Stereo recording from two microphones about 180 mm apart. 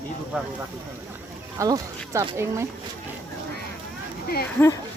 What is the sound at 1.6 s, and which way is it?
Speech, 20° right (ahead or behind).